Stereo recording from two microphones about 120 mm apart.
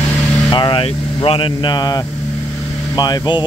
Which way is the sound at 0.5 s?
40° left (ahead or behind).